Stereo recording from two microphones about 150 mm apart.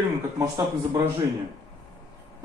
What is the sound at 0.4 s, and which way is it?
Speech, 20° right (ahead or behind).